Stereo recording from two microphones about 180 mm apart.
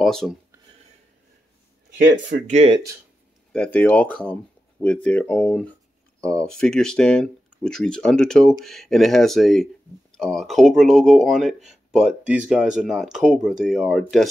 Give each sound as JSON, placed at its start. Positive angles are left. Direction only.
{"t": 0.0, "sound": "speech", "side_deg": 0}
{"t": 2.4, "sound": "speech", "side_deg": -40}
{"t": 3.5, "sound": "speech", "side_deg": 5}